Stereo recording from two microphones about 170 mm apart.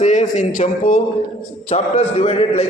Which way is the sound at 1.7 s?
35° left (ahead or behind).